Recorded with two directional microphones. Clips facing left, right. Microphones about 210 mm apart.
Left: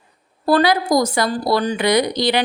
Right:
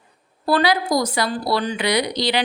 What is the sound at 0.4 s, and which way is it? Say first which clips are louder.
A woman's voice: left 3 dB; 45° left (ahead or behind).